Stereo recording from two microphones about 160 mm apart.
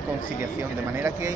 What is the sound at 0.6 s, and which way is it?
Speech, 15° right (ahead or behind).